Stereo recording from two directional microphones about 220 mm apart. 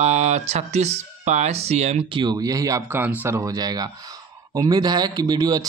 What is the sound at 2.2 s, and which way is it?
Speech, 15° right (ahead or behind).